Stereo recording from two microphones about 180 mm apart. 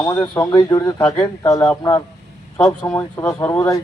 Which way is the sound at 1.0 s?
10° left (ahead or behind).